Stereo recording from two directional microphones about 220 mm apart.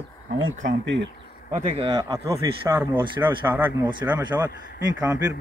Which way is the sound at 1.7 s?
20° right (ahead or behind).